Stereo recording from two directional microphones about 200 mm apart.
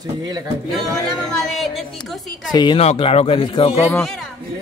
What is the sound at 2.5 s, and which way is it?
A man's voice, 25° left (ahead or behind).